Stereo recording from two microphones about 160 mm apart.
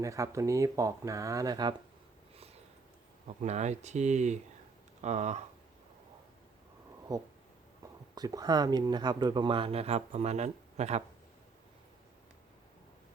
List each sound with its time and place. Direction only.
0.0 s speech: 20° right (ahead or behind)
3.2 s speech: 45° right (ahead or behind)
8.1 s speech: 25° right (ahead or behind); by 11.0 s 45° right (ahead or behind)